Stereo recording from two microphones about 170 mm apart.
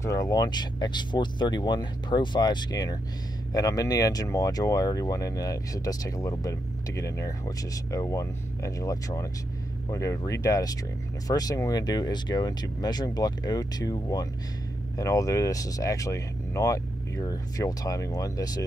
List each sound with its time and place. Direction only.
0.0 s speech: 20° left (ahead or behind)